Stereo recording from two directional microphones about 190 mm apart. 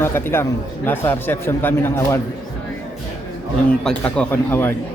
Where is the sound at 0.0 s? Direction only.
10° left (ahead or behind).